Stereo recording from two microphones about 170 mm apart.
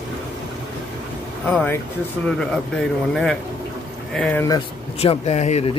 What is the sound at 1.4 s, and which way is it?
Speech, 10° left (ahead or behind).